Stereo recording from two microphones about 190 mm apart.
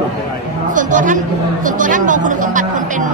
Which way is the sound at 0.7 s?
45° right (ahead or behind).